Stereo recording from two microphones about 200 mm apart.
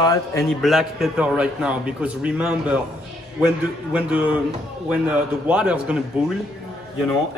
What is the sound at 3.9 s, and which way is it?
A man's voice, 5° right (ahead or behind).